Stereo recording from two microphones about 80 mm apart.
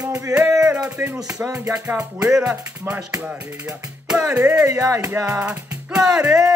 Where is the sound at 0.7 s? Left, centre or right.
Centre.